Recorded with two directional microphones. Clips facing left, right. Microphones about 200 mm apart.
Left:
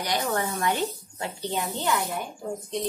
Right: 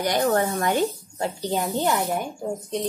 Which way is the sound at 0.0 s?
50° right (ahead or behind).